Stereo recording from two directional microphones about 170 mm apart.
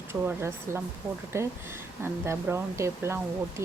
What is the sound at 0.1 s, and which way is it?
Speech, 15° right (ahead or behind).